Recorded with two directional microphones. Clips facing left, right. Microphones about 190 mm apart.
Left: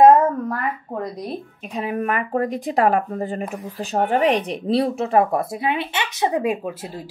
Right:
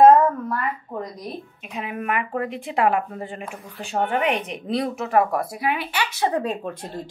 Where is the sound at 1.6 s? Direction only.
35° left (ahead or behind).